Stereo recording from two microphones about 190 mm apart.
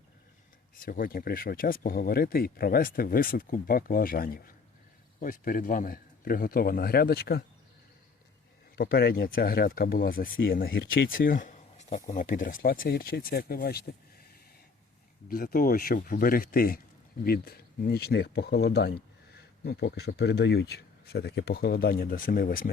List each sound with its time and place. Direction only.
0.8 s speech: 50° left (ahead or behind)
8.7 s speech: 50° left (ahead or behind)
15.3 s speech: 50° left (ahead or behind)